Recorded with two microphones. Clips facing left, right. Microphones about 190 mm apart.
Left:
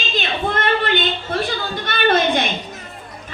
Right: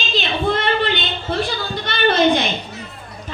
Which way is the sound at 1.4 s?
50° left (ahead or behind).